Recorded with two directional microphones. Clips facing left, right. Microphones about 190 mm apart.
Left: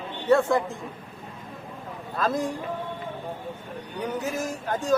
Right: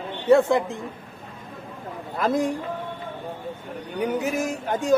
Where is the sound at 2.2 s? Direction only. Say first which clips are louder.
Right 3 dB; 15° right (ahead or behind).